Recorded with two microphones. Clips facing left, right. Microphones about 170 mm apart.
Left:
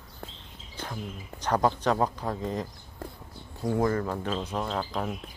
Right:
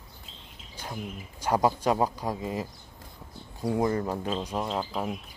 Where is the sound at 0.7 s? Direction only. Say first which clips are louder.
Even; 10° right (ahead or behind).